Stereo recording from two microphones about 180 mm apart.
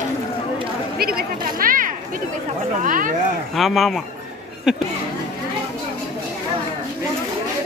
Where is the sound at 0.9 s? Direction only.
55° right (ahead or behind).